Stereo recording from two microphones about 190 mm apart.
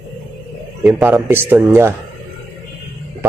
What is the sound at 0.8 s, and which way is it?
Speech, 5° right (ahead or behind).